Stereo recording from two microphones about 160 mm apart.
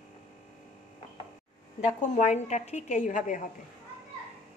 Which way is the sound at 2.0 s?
50° left (ahead or behind).